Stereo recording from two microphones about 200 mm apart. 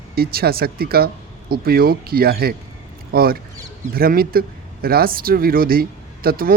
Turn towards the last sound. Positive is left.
turn(degrees=-45)  # may be behind; listen again after turning